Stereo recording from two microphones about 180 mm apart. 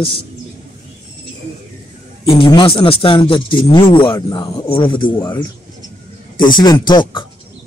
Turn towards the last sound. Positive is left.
turn(degrees=25)  # may be behind; listen again after turning